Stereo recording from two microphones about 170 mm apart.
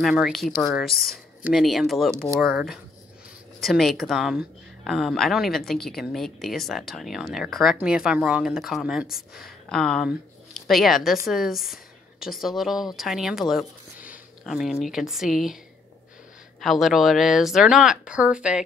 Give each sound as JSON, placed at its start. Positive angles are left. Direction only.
{"t": 0.0, "sound": "speech", "side_deg": 0}
{"t": 0.9, "sound": "speech", "side_deg": 60}
{"t": 1.4, "sound": "speech", "side_deg": 0}
{"t": 16.6, "sound": "speech", "side_deg": 0}